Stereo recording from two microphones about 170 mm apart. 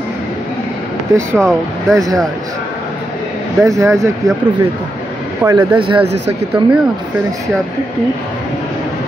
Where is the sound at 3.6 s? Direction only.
15° right (ahead or behind).